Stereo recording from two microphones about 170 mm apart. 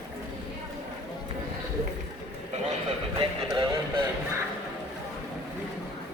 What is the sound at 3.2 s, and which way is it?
Music, 30° right (ahead or behind).